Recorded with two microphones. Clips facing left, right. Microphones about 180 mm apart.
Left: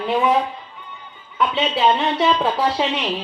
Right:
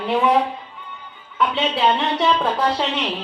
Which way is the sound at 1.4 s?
Centre (ahead or behind).